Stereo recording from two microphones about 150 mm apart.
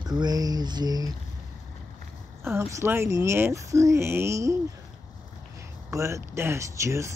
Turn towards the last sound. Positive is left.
turn(degrees=-20)  # may be behind; listen again after turning